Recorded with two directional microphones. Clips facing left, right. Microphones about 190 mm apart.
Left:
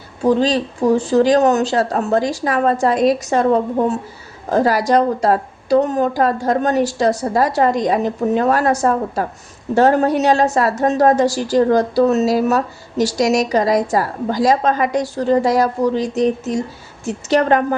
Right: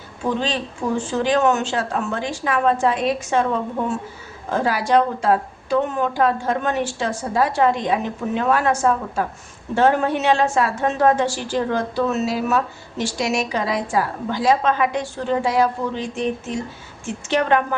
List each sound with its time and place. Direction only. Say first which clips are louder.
0.2 s a woman's voice: left 8 dB; 35° left (ahead or behind)